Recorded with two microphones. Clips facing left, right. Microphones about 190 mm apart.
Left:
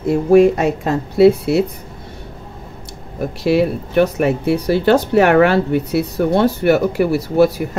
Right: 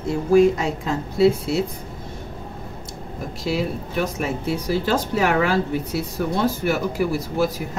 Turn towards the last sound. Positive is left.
turn(degrees=65)  # may be behind; listen again after turning